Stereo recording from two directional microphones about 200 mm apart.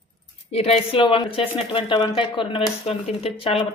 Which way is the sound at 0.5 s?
30° left (ahead or behind).